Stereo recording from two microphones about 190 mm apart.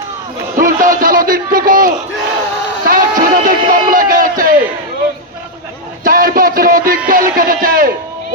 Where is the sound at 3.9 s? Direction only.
45° right (ahead or behind).